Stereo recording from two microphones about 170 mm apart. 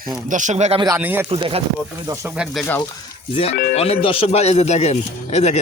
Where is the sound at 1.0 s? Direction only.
10° right (ahead or behind).